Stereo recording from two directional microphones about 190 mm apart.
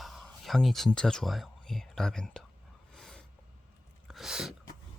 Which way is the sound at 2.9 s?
5° left (ahead or behind).